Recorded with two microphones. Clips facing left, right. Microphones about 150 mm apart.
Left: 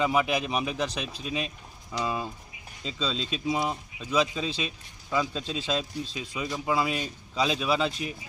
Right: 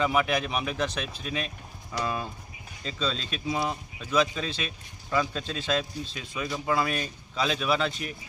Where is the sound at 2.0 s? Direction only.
15° left (ahead or behind).